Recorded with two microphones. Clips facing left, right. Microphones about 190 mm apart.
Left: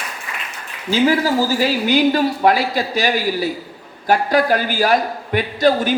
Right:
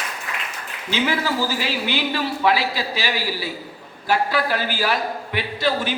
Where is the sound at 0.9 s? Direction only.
40° left (ahead or behind).